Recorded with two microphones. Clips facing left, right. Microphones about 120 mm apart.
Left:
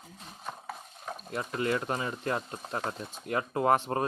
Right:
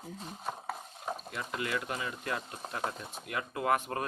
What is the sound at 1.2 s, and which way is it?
Speech, 35° left (ahead or behind).